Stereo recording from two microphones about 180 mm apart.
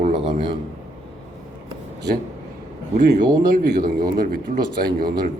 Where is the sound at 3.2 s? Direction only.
20° right (ahead or behind).